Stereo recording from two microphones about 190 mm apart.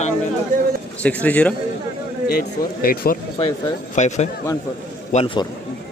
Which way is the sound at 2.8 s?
50° left (ahead or behind).